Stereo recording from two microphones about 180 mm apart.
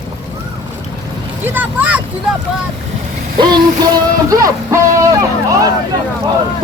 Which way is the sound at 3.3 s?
25° right (ahead or behind).